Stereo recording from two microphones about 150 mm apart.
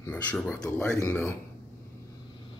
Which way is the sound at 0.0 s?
10° left (ahead or behind).